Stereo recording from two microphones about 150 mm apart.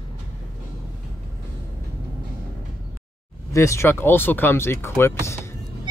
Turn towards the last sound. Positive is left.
turn(degrees=15)  # may be behind; listen again after turning